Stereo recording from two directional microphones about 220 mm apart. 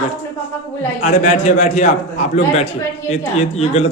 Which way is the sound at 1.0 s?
30° left (ahead or behind).